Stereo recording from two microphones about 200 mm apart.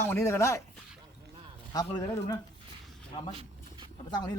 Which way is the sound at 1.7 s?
20° left (ahead or behind).